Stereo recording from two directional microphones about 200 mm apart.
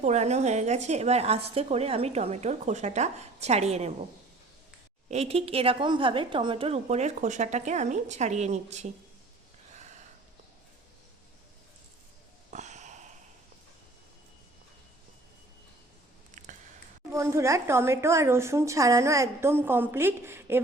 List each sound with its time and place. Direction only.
0.0 s speech: 35° right (ahead or behind)
5.0 s speech: 30° right (ahead or behind)
9.7 s a sound: 35° right (ahead or behind)
12.5 s sniff: 35° right (ahead or behind)
17.1 s a woman's voice: 15° right (ahead or behind)